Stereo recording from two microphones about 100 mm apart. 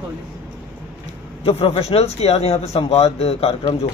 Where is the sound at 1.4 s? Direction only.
80° left.